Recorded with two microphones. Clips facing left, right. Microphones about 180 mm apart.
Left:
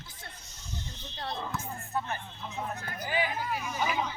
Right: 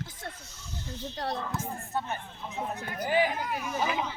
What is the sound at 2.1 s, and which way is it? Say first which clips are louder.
Speech: right 1 dB; 15° right (ahead or behind).